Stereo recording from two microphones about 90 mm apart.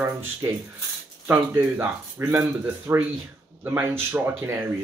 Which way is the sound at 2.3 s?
20° right (ahead or behind).